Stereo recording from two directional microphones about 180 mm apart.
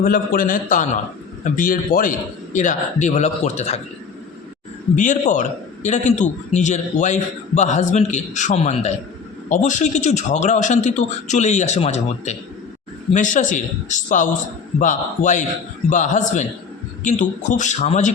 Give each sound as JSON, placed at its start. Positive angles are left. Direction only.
{"t": 0.0, "sound": "a man's voice", "side_deg": 50}
{"t": 4.9, "sound": "a man's voice", "side_deg": 45}